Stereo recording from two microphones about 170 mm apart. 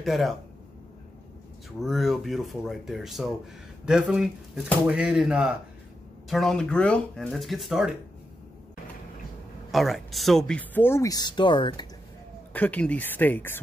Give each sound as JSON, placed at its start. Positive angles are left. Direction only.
{"t": 0.0, "sound": "speech", "side_deg": 0}
{"t": 1.8, "sound": "speech", "side_deg": 0}
{"t": 9.7, "sound": "speech", "side_deg": 0}
{"t": 12.5, "sound": "speech", "side_deg": 10}